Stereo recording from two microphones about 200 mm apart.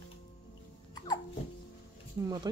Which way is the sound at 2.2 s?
20° right (ahead or behind).